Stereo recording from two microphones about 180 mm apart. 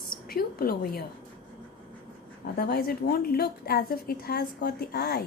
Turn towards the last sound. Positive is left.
turn(degrees=60)  # may be behind; listen again after turning